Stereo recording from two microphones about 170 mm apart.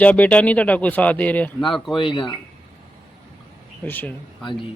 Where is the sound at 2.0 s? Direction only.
30° left (ahead or behind).